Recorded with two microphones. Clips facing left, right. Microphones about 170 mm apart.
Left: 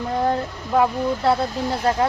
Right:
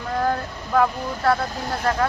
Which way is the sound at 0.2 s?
20° left (ahead or behind).